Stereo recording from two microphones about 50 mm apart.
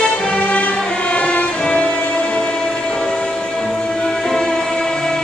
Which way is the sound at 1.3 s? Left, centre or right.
Left.